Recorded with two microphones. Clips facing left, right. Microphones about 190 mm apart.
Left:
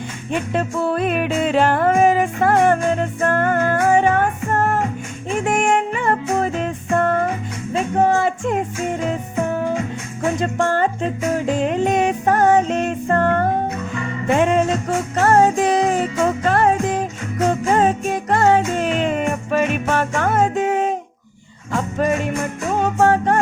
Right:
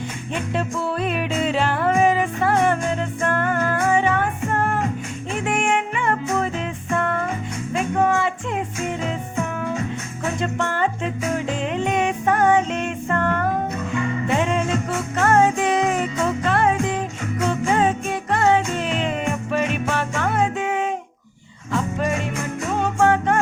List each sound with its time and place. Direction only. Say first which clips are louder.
0.5 s music: left 4 dB; 50° left (ahead or behind); by 13.5 s 30° left (ahead or behind)
14.3 s music: left 6 dB; 50° left (ahead or behind)